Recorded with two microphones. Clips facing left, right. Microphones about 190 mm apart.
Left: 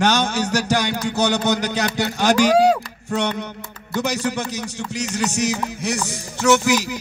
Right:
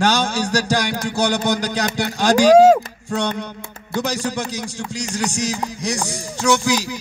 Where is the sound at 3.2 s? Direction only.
10° right (ahead or behind).